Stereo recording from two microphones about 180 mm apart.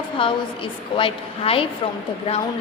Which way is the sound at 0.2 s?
30° left (ahead or behind).